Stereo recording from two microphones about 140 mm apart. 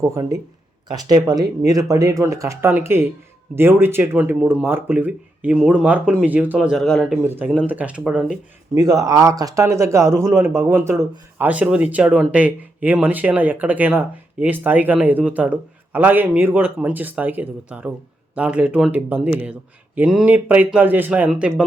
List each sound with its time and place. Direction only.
0.0 s speech: 25° right (ahead or behind); by 7.2 s centre (ahead or behind)
7.3 s speech: 15° right (ahead or behind)
8.7 s speech: 25° right (ahead or behind); by 21.5 s 10° right (ahead or behind)